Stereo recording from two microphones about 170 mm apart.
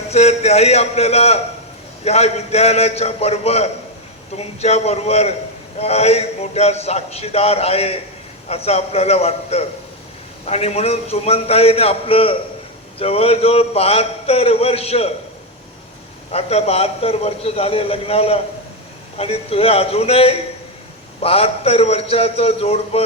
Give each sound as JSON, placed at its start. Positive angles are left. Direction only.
{"t": 0.1, "sound": "a man's voice", "side_deg": 40}
{"t": 16.3, "sound": "a man's voice", "side_deg": 35}